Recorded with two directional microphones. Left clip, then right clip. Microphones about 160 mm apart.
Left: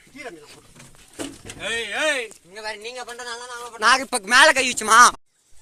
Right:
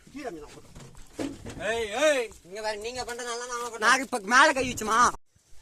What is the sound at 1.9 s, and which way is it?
Speech, 35° right (ahead or behind).